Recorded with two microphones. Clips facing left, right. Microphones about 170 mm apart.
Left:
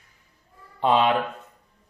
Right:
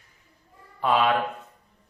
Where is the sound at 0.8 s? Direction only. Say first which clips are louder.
Left 2 dB; 25° left (ahead or behind).